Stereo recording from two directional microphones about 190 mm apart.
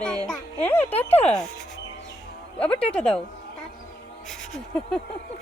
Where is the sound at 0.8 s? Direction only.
35° left (ahead or behind).